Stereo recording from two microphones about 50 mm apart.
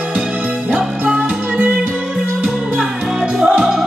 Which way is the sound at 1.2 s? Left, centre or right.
Right.